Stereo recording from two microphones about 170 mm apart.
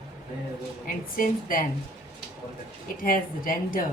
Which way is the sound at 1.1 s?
55° left (ahead or behind).